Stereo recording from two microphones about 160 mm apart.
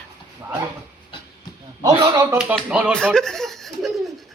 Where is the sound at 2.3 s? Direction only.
5° right (ahead or behind).